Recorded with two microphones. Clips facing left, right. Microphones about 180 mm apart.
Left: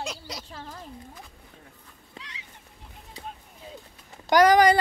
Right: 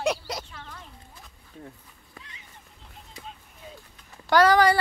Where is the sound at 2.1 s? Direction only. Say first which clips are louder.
Left 4 dB; 80° left.